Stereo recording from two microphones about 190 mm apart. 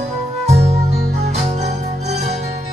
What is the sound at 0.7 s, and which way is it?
Music, 35° right (ahead or behind).